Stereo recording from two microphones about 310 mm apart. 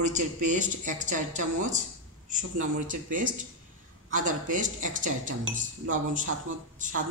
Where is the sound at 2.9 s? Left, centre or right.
Right.